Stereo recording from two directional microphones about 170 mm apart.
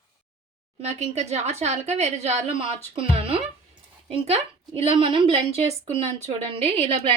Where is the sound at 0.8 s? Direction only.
40° right (ahead or behind).